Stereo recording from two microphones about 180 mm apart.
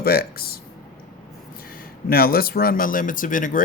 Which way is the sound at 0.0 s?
60° left (ahead or behind).